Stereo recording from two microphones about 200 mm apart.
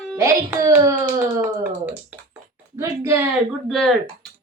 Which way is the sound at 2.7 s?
10° right (ahead or behind).